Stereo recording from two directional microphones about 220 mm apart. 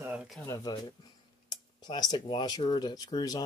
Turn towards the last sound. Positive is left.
turn(degrees=15)  # may be behind; listen again after turning